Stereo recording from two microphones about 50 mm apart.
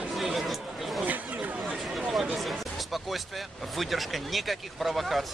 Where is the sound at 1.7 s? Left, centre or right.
Centre.